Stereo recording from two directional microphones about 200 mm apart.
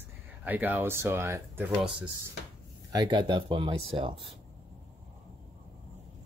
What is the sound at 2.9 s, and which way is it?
Speech, 20° right (ahead or behind).